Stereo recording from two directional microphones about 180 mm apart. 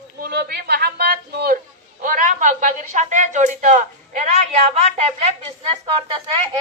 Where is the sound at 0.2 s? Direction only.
60° right (ahead or behind).